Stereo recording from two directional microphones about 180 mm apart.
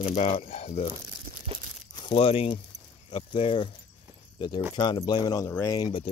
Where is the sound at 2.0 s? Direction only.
30° left (ahead or behind).